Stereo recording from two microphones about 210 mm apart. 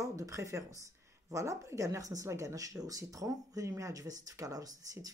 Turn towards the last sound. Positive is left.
turn(degrees=-15)  # may be behind; listen again after turning